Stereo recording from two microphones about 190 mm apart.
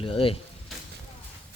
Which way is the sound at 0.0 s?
30° left (ahead or behind).